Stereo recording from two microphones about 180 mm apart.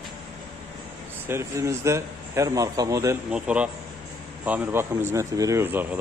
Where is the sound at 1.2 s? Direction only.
15° right (ahead or behind).